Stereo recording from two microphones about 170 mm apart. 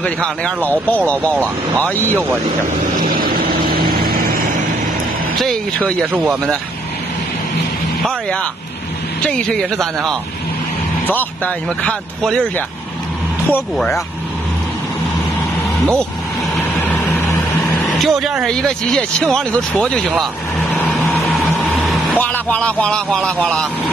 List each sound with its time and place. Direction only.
0.0 s speech: 10° left (ahead or behind)
3.0 s vehicle: 60° right (ahead or behind)
5.4 s speech: 5° left (ahead or behind)
9.2 s speech: 5° left (ahead or behind)
16.5 s vehicle: 5° left (ahead or behind)
17.6 s speech: centre (ahead or behind)
20.7 s vehicle: 10° left (ahead or behind)
21.8 s speech: 10° left (ahead or behind)